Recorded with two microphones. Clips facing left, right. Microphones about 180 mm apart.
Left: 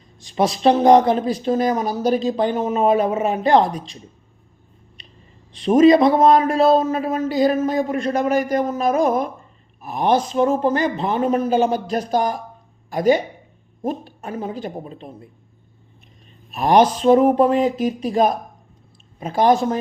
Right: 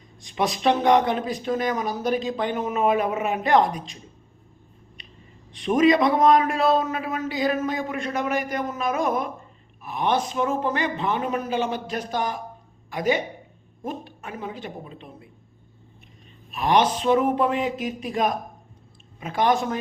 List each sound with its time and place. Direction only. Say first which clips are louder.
0.2 s a man's voice: left 6 dB; 30° left (ahead or behind)
5.5 s a man's voice: left 6 dB; 35° left (ahead or behind)
16.5 s a man's voice: left 5 dB; 40° left (ahead or behind)